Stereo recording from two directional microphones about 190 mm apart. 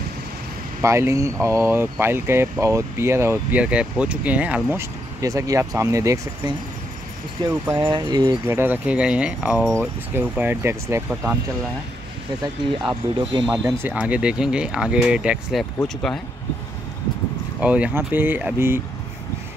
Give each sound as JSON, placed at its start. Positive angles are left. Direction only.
{"t": 0.8, "sound": "speech", "side_deg": -15}
{"t": 7.6, "sound": "speech", "side_deg": -10}
{"t": 12.8, "sound": "speech", "side_deg": -25}
{"t": 13.7, "sound": "speech", "side_deg": -5}
{"t": 17.6, "sound": "speech", "side_deg": -5}